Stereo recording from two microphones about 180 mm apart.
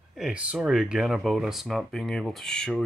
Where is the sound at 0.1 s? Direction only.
5° right (ahead or behind).